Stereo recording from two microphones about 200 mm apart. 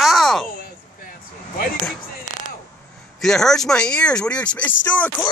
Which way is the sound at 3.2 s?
Centre (ahead or behind).